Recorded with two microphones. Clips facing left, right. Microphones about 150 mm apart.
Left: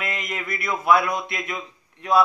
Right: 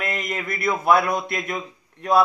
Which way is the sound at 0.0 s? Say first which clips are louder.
Right 3 dB; 40° right (ahead or behind).